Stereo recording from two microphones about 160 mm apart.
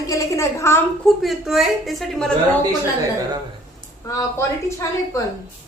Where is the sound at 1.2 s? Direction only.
Centre (ahead or behind).